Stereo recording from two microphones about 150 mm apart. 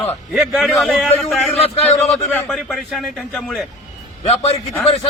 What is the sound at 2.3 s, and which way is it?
A man's voice, 5° left (ahead or behind).